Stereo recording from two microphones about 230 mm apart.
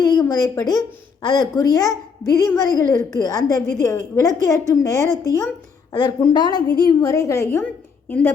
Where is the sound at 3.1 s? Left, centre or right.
Centre.